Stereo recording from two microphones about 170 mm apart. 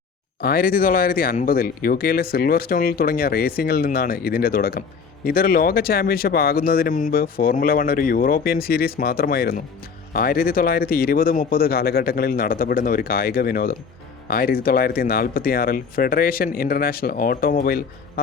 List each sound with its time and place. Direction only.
0.4 s speech: 60° left (ahead or behind)